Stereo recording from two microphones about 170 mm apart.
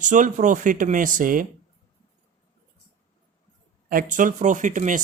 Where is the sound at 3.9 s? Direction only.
50° right (ahead or behind).